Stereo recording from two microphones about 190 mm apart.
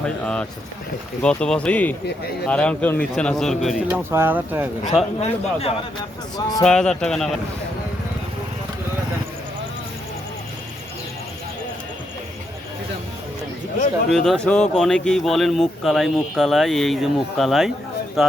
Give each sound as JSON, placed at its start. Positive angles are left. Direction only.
{"t": 0.0, "sound": "speech", "side_deg": 5}
{"t": 5.2, "sound": "a man's voice", "side_deg": 30}
{"t": 6.6, "sound": "speech", "side_deg": 5}
{"t": 14.1, "sound": "speech", "side_deg": 0}